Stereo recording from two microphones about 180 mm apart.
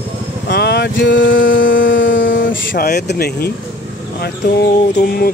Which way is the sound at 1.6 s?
50° left (ahead or behind).